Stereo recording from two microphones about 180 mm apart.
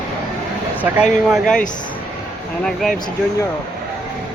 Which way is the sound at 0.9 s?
Centre (ahead or behind).